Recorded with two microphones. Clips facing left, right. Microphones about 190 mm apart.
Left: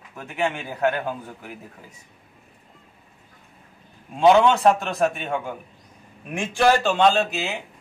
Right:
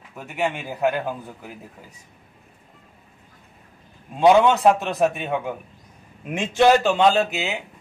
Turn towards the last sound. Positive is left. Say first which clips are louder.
# right 1 dB
turn(degrees=0)  # may be behind; listen again after turning